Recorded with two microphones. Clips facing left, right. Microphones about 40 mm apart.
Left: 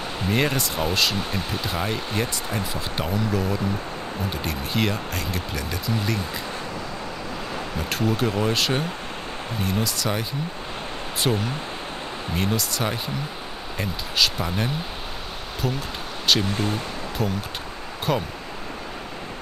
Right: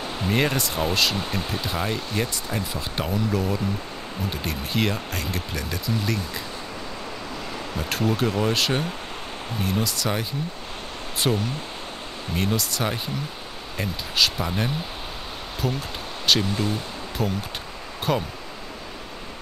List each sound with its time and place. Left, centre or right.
0.3 s speech: centre
7.9 s speech: centre
11.3 s speech: centre